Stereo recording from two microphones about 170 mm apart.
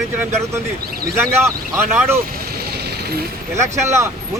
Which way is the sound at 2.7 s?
70° right (ahead or behind).